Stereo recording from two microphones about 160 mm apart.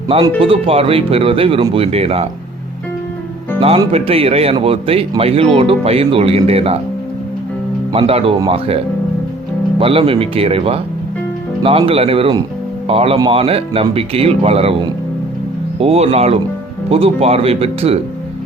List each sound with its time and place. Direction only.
0.3 s speech: 35° right (ahead or behind)
3.9 s speech: 35° right (ahead or behind)
7.9 s speech: 35° right (ahead or behind)
11.8 s speech: 35° right (ahead or behind)